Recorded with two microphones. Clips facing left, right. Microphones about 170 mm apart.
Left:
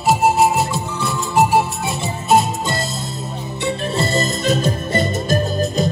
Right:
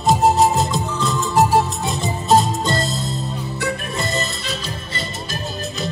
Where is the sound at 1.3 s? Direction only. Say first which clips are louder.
Left 1 dB; 15° left (ahead or behind).